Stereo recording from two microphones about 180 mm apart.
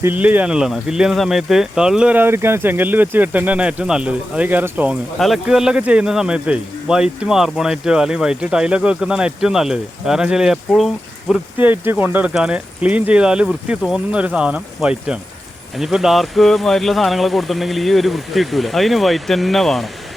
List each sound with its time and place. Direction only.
0.0 s a man's voice: 10° right (ahead or behind)
11.6 s a man's voice: 10° right (ahead or behind)